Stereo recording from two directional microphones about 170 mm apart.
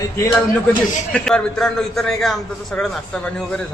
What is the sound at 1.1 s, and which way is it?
A man's voice, 5° left (ahead or behind).